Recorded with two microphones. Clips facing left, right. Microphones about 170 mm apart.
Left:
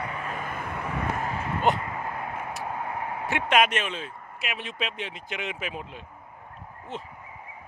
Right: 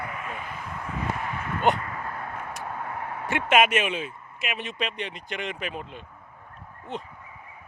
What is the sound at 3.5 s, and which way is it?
Speech, 5° right (ahead or behind).